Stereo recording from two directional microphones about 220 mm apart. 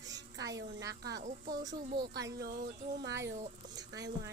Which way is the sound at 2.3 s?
45° right (ahead or behind).